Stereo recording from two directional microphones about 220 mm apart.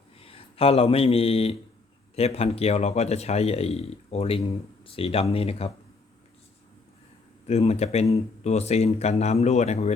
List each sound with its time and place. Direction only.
0.2 s speech: 25° left (ahead or behind)
7.4 s speech: 30° left (ahead or behind)